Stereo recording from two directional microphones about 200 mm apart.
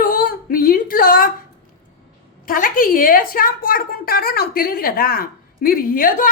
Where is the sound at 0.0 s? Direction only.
45° left (ahead or behind).